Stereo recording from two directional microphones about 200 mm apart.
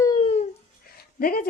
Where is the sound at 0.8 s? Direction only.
50° left (ahead or behind).